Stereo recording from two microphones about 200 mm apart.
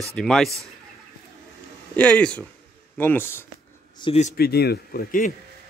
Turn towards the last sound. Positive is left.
turn(degrees=45)  # may be behind; listen again after turning